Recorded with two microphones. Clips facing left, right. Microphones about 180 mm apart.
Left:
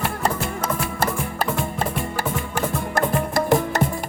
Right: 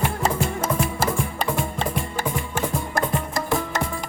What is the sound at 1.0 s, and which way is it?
Music, centre (ahead or behind).